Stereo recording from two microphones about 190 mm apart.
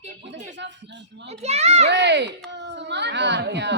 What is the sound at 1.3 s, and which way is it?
Speech, 35° right (ahead or behind).